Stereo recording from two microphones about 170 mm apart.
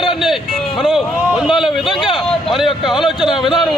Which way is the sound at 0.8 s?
Centre (ahead or behind).